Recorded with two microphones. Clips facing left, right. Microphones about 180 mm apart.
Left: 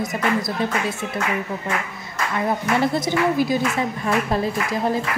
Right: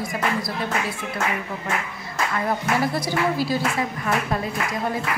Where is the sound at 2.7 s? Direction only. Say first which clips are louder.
Left 5 dB; 25° left (ahead or behind).